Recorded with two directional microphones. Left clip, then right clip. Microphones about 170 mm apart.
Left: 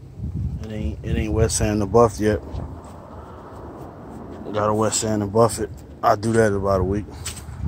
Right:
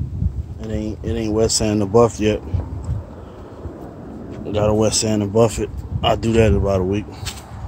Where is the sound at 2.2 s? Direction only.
15° right (ahead or behind).